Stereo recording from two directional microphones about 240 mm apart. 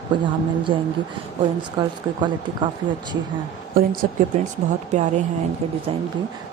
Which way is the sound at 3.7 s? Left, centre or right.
Right.